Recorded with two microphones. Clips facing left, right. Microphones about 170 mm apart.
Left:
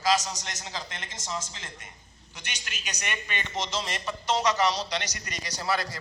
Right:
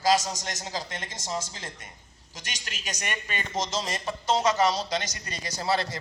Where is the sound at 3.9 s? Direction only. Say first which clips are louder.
Right 2 dB; 25° right (ahead or behind).